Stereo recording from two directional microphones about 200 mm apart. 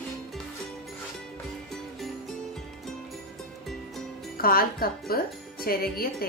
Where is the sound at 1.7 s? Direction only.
Centre (ahead or behind).